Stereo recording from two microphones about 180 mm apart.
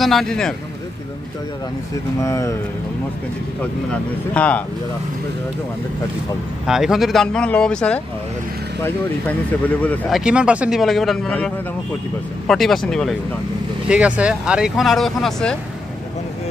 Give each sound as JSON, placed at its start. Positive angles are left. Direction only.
{"t": 0.0, "sound": "speech", "side_deg": 0}
{"t": 2.2, "sound": "speech", "side_deg": 15}
{"t": 4.3, "sound": "speech", "side_deg": 5}
{"t": 6.6, "sound": "speech", "side_deg": 0}